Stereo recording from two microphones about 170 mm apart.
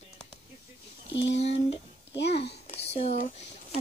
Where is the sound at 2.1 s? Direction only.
85° left.